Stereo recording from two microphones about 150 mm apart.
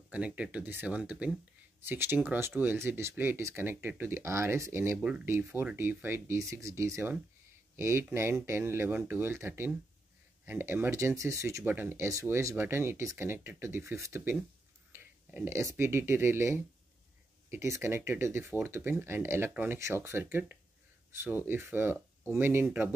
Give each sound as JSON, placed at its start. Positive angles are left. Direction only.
{"t": 0.1, "sound": "speech", "side_deg": -10}
{"t": 4.9, "sound": "speech", "side_deg": -10}